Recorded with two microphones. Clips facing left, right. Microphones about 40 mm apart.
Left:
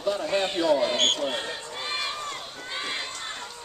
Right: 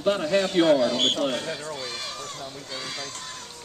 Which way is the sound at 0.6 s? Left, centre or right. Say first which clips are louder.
Right 6 dB; right.